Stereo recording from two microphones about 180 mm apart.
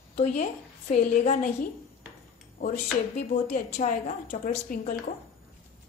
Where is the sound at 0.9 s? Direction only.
50° left (ahead or behind).